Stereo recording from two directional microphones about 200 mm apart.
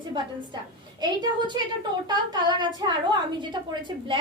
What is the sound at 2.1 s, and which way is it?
Speech, 20° right (ahead or behind).